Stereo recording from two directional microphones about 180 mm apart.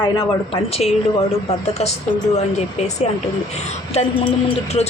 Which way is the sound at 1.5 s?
35° left (ahead or behind).